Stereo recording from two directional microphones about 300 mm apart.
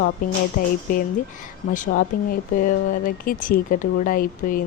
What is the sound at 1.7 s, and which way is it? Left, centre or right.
A woman's voice, left.